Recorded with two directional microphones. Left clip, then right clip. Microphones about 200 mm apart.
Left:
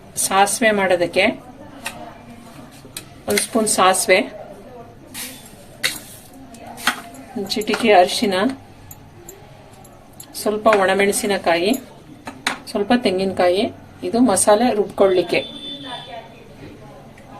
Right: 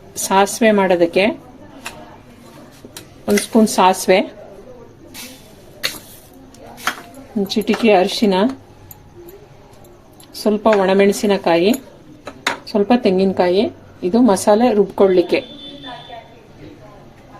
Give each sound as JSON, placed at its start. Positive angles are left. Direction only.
{"t": 0.2, "sound": "a woman's voice", "side_deg": -50}
{"t": 3.5, "sound": "a woman's voice", "side_deg": -45}
{"t": 7.4, "sound": "a woman's voice", "side_deg": -45}
{"t": 10.3, "sound": "a woman's voice", "side_deg": -45}